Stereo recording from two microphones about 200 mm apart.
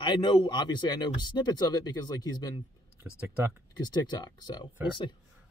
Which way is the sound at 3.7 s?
20° left (ahead or behind).